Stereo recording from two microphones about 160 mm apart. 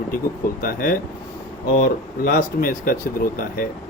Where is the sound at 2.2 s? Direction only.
60° left (ahead or behind).